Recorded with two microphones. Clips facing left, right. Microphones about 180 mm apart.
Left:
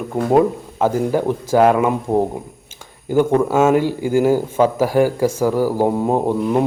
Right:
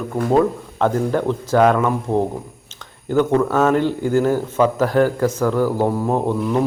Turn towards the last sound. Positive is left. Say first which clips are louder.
# left 2 dB
turn(degrees=15)  # may be behind; listen again after turning